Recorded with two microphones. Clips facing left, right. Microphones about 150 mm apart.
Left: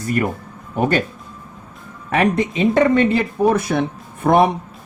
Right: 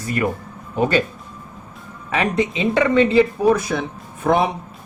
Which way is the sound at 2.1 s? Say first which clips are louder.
Left 3 dB; 55° left (ahead or behind).